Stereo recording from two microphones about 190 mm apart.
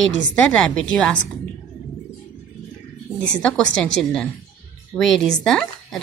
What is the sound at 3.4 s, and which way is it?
Speech, 5° left (ahead or behind).